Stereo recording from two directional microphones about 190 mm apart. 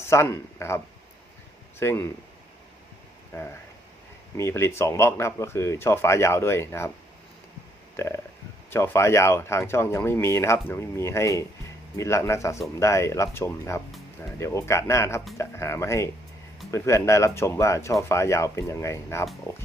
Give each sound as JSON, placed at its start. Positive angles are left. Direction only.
{"t": 0.1, "sound": "speech", "side_deg": 15}
{"t": 1.8, "sound": "speech", "side_deg": 15}
{"t": 3.3, "sound": "speech", "side_deg": 15}
{"t": 7.9, "sound": "speech", "side_deg": 15}